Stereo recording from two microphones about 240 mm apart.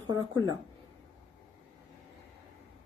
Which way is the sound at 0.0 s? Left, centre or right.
Centre.